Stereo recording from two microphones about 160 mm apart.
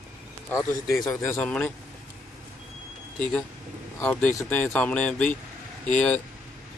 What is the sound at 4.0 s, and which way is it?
Speech, 15° left (ahead or behind).